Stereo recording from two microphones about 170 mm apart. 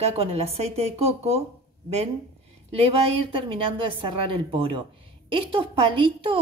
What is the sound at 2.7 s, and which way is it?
A woman's voice, 35° right (ahead or behind).